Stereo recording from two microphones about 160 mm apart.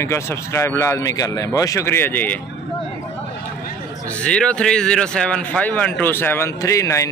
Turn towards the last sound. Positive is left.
turn(degrees=20)  # may be behind; listen again after turning